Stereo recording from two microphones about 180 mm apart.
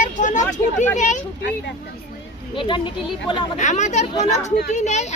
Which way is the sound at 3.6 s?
40° left (ahead or behind).